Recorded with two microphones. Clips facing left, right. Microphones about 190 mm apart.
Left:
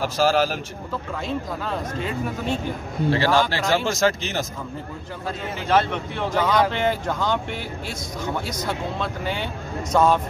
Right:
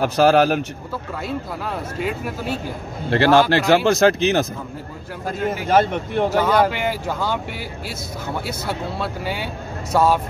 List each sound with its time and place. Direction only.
0.0 s speech: 60° right (ahead or behind)
1.2 s speech: 5° right (ahead or behind)
3.1 s speech: 60° right (ahead or behind)
5.5 s speech: 45° right (ahead or behind)
6.3 s speech: 10° right (ahead or behind)
8.5 s speech: 5° right (ahead or behind)